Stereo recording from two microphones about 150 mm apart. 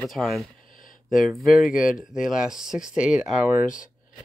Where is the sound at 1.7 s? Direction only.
60° left (ahead or behind).